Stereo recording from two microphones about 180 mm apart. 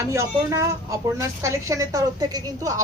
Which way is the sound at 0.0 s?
15° right (ahead or behind).